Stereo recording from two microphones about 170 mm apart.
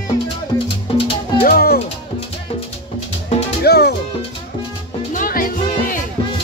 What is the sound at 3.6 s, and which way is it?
Music, 70° left (ahead or behind).